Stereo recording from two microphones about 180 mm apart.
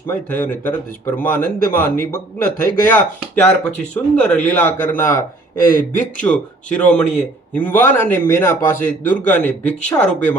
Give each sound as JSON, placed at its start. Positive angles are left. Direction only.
{"t": 0.1, "sound": "speech", "side_deg": 10}
{"t": 5.6, "sound": "speech", "side_deg": 50}
{"t": 6.2, "sound": "speech", "side_deg": 5}